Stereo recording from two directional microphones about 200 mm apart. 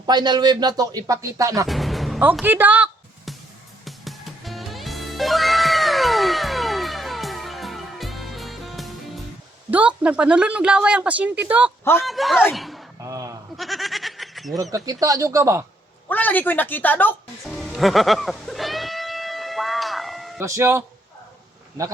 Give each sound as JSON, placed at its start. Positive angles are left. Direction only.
{"t": 0.0, "sound": "speech", "side_deg": -20}
{"t": 1.6, "sound": "music", "side_deg": 0}
{"t": 9.6, "sound": "a woman's voice", "side_deg": -5}
{"t": 13.0, "sound": "a sound", "side_deg": -15}
{"t": 13.6, "sound": "a sound", "side_deg": 0}
{"t": 14.8, "sound": "speech", "side_deg": -15}
{"t": 16.0, "sound": "music", "side_deg": 10}
{"t": 20.4, "sound": "speech", "side_deg": -15}